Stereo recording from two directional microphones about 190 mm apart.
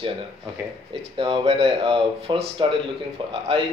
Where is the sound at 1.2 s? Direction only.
30° right (ahead or behind).